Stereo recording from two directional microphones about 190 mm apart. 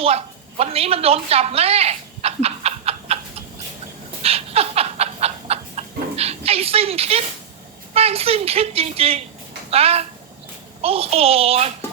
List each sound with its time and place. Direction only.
0.6 s speech: 30° right (ahead or behind)
4.2 s a sound: 30° right (ahead or behind)
7.9 s a child's voice: 30° right (ahead or behind)